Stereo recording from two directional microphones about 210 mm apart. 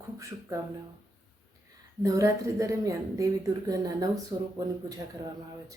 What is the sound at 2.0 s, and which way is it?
Speech, 15° right (ahead or behind).